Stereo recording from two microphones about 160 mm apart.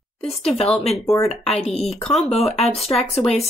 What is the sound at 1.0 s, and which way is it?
Speech, 20° left (ahead or behind).